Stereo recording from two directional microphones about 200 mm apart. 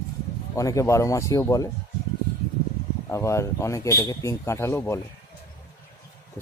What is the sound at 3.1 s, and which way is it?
Speech, 15° left (ahead or behind).